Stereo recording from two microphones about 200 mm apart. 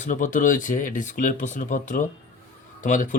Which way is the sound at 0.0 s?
40° left (ahead or behind).